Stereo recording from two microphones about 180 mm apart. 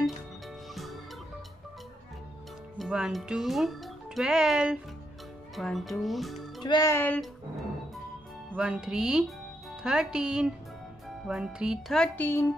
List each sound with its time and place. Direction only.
2.8 s a child's voice: centre (ahead or behind)
6.6 s speech: 20° left (ahead or behind)
8.5 s a child's voice: 5° right (ahead or behind); by 12.4 s 10° left (ahead or behind)